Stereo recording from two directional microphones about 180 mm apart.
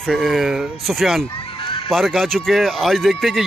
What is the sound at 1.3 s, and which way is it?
Fowl, 25° left (ahead or behind).